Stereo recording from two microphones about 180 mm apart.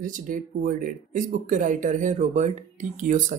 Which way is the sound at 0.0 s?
50° right (ahead or behind).